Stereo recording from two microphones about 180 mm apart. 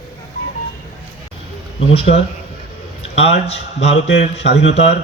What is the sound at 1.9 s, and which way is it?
Speech, 35° left (ahead or behind).